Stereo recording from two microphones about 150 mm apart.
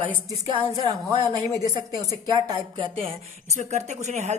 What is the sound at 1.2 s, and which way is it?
Speech, 25° right (ahead or behind).